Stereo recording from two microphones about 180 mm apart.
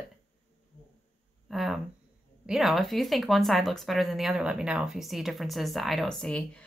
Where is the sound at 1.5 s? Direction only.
Centre (ahead or behind).